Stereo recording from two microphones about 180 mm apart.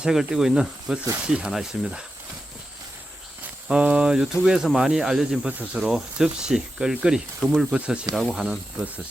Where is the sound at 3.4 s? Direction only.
10° right (ahead or behind).